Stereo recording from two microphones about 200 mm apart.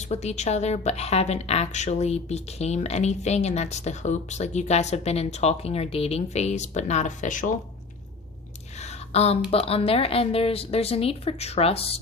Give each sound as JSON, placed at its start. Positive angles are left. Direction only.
{"t": 0.0, "sound": "speech", "side_deg": 35}
{"t": 8.7, "sound": "a sound", "side_deg": 35}
{"t": 9.5, "sound": "a woman's voice", "side_deg": 30}